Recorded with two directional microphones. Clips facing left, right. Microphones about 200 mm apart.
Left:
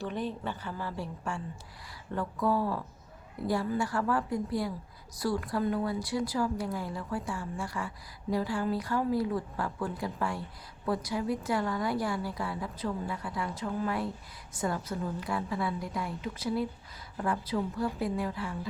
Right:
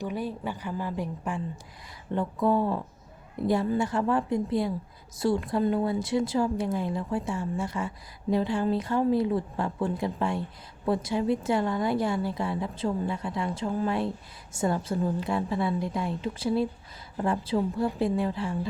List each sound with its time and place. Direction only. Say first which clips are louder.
0.0 s a woman's voice: right 2 dB; 10° right (ahead or behind); by 18.7 s 30° right (ahead or behind)